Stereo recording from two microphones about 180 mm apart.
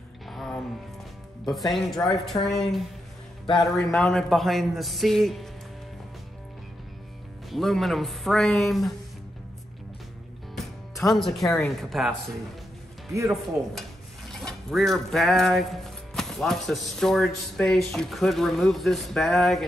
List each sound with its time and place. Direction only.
0.3 s music: centre (ahead or behind)
1.4 s speech: centre (ahead or behind)
7.5 s speech: centre (ahead or behind)
10.5 s speech: centre (ahead or behind)
13.1 s speech: 15° right (ahead or behind)
14.3 s speech: centre (ahead or behind)